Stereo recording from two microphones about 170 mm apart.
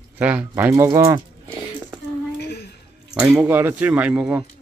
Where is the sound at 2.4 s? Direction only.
70° left (ahead or behind).